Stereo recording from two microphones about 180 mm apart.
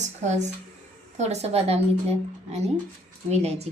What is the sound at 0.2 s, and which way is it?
A woman's voice, 40° right (ahead or behind).